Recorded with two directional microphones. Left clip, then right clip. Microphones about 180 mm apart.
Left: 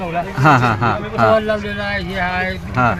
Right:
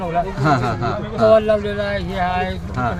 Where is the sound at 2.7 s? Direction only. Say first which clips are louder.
Left 8 dB; 50° left (ahead or behind).